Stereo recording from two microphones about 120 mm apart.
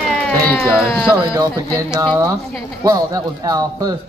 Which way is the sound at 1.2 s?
40° right (ahead or behind).